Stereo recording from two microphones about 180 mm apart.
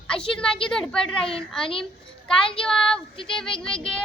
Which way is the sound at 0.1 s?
5° left (ahead or behind).